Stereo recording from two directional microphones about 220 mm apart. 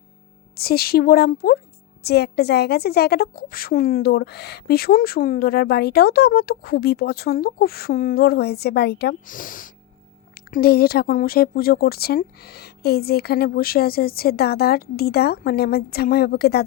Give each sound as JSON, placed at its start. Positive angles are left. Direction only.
{"t": 0.5, "sound": "a woman's voice", "side_deg": 45}